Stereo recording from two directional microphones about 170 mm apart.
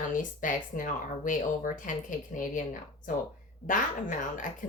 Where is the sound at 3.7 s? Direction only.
50° left (ahead or behind).